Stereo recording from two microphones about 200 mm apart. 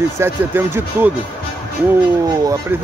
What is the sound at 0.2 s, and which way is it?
Speech, 10° right (ahead or behind).